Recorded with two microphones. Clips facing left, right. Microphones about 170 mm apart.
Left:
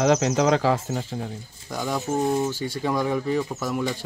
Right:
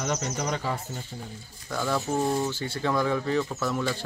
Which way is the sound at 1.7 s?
15° left (ahead or behind).